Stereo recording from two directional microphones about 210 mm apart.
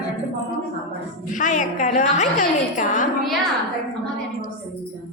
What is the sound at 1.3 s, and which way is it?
A woman's voice, 35° left (ahead or behind).